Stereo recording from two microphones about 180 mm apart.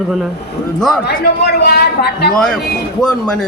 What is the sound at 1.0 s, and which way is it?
A man's voice, 65° left (ahead or behind).